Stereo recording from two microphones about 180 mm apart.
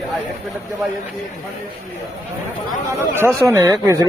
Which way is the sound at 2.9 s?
15° right (ahead or behind).